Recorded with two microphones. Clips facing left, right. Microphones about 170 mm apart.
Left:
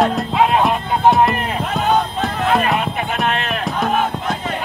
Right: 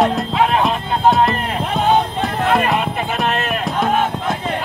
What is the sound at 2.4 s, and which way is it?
Music, centre (ahead or behind).